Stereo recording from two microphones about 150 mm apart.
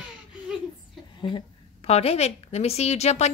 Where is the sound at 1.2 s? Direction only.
30° left (ahead or behind).